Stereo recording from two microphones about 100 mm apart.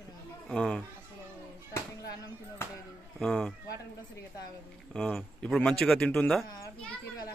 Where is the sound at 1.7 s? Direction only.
30° left (ahead or behind).